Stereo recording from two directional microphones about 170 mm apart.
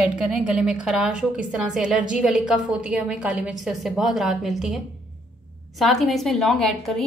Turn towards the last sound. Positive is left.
turn(degrees=0)  # may be behind; listen again after turning